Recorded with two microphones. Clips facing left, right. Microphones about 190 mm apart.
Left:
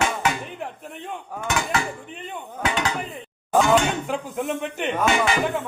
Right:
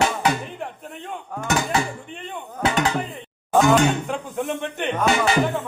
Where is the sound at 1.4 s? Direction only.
40° right (ahead or behind).